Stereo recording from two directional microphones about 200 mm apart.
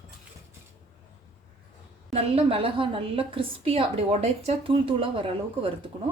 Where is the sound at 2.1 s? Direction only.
30° right (ahead or behind).